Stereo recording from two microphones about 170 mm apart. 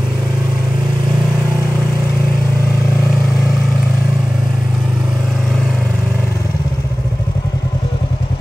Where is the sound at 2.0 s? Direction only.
10° left (ahead or behind).